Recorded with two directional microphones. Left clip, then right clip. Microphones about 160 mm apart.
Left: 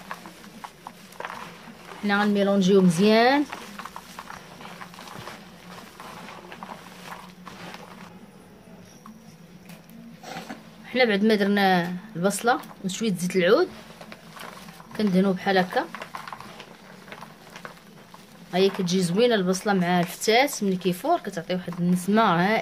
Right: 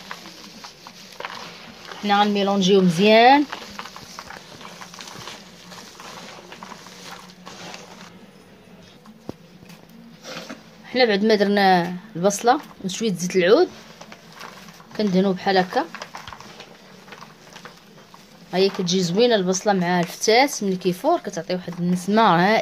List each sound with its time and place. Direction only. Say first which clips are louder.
2.0 s speech: right 4 dB; 15° right (ahead or behind)
10.9 s speech: right 3 dB; 25° right (ahead or behind)
15.0 s speech: right 3 dB; 30° right (ahead or behind)
18.5 s speech: right 2 dB; 30° right (ahead or behind)